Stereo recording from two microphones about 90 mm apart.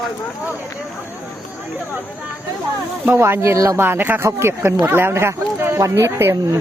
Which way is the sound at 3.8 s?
20° right (ahead or behind).